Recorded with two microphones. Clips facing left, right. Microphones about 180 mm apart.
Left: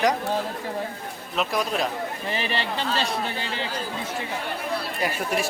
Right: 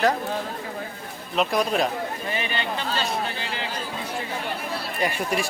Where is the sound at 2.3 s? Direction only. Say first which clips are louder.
Left 2 dB; 30° left (ahead or behind).